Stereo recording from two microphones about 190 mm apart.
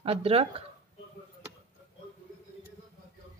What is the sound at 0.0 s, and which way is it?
Speech, 30° right (ahead or behind).